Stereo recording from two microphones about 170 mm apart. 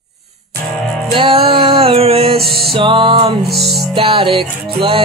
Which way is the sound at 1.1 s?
35° right (ahead or behind).